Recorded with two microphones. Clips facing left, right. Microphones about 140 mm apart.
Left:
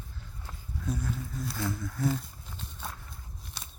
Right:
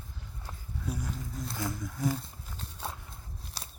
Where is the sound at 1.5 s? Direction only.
20° right (ahead or behind).